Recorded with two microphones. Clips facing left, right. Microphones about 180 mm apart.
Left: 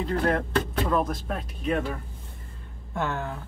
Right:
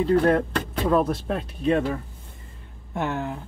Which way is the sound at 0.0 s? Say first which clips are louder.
Right 6 dB; 30° right (ahead or behind).